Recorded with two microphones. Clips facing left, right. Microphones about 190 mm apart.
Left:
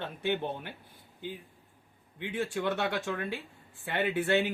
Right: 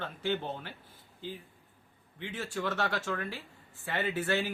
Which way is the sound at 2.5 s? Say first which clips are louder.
Right 1 dB; 20° left (ahead or behind).